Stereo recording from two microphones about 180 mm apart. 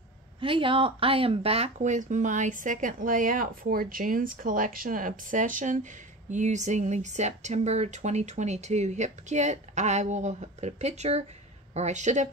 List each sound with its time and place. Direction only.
0.4 s speech: 30° right (ahead or behind)